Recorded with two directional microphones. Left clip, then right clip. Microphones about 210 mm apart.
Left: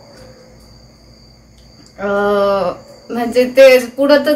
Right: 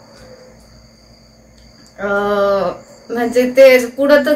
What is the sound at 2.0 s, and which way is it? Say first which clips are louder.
Speech: left 1 dB; 10° right (ahead or behind).